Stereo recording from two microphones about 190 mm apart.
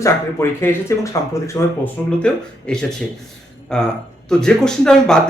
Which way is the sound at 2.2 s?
5° left (ahead or behind).